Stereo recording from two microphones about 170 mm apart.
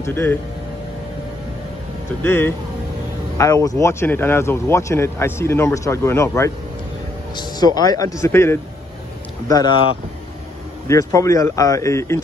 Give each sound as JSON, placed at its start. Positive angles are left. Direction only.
{"t": 0.0, "sound": "speech", "side_deg": 15}
{"t": 2.2, "sound": "speech", "side_deg": 10}
{"t": 10.9, "sound": "speech", "side_deg": 20}